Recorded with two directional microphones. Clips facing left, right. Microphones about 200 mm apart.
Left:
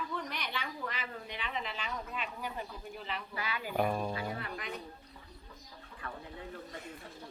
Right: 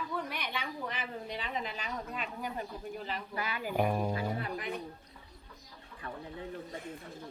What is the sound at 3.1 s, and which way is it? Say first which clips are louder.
Speech: left 1 dB; 45° right (ahead or behind).